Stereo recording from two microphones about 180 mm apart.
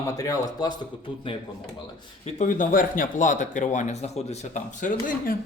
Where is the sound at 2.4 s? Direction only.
45° left (ahead or behind).